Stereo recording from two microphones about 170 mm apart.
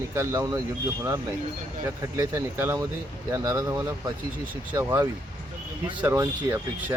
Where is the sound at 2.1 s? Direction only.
15° right (ahead or behind).